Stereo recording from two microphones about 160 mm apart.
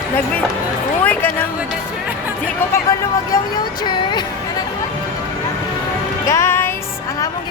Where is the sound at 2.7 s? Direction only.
20° left (ahead or behind).